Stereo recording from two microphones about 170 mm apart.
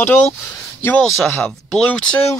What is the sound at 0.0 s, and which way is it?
Speech, 10° left (ahead or behind).